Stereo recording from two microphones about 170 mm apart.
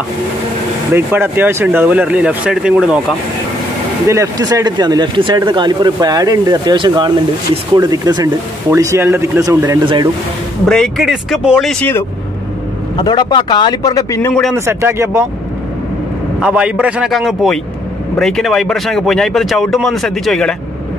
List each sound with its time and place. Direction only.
0.9 s speech: 15° right (ahead or behind)
4.1 s speech: 20° right (ahead or behind)
10.7 s speech: centre (ahead or behind)
12.9 s a man's voice: 25° left (ahead or behind)
14.5 s speech: 15° right (ahead or behind)
16.3 s speech: 5° right (ahead or behind)